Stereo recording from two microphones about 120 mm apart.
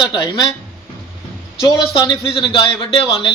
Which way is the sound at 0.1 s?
35° left (ahead or behind).